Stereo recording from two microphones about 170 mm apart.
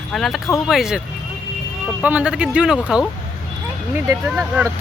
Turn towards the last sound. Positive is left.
turn(degrees=-15)  # may be behind; listen again after turning